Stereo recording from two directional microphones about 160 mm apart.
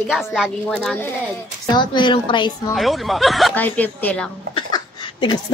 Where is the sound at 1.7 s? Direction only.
30° left (ahead or behind).